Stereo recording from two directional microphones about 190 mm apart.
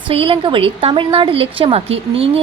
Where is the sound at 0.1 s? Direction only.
30° right (ahead or behind).